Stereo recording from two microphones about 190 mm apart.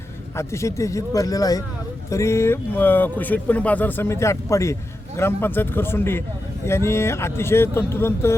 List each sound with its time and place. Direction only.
0.3 s speech: 15° left (ahead or behind)